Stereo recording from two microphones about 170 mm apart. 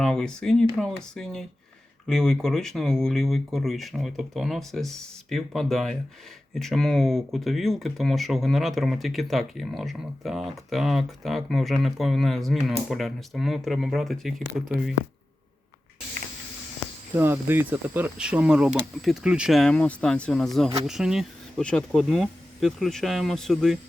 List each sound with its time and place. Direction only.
0.0 s speech: 5° left (ahead or behind)
17.2 s speech: 15° right (ahead or behind); by 23.7 s 5° left (ahead or behind)